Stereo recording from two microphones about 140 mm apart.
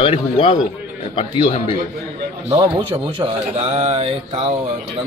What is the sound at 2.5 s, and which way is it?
Speech, 40° right (ahead or behind).